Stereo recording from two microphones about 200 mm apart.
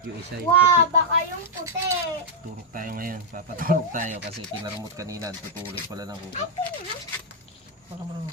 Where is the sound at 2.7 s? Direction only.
45° right (ahead or behind).